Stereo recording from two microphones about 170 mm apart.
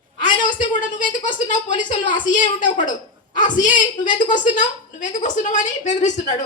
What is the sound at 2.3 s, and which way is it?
Speech, 50° left (ahead or behind).